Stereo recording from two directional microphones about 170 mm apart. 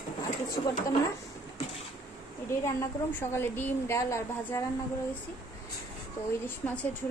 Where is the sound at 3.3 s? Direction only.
15° left (ahead or behind).